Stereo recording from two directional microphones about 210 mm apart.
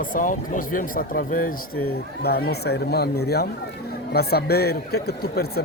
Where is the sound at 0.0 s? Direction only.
40° left (ahead or behind).